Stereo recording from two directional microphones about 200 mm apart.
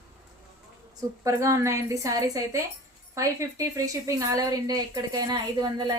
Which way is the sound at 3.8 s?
15° right (ahead or behind).